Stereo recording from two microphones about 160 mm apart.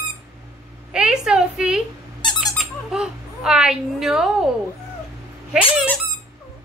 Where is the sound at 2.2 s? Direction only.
30° left (ahead or behind).